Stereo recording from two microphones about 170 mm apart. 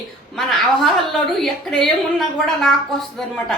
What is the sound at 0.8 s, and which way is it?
A woman's voice, centre (ahead or behind).